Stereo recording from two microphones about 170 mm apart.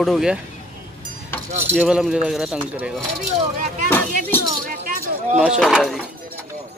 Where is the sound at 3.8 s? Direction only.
15° left (ahead or behind).